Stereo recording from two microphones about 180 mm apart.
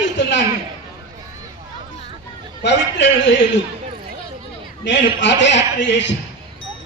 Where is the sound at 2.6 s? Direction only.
75° left (ahead or behind).